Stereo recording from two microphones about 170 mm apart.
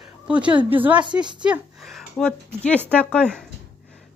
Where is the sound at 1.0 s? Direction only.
25° right (ahead or behind).